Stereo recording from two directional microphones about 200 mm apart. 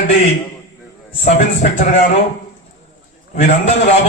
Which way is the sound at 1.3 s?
40° left (ahead or behind).